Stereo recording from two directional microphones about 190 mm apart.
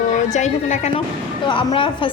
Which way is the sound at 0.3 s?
40° left (ahead or behind).